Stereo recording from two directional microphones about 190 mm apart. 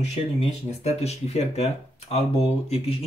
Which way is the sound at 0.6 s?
35° left (ahead or behind).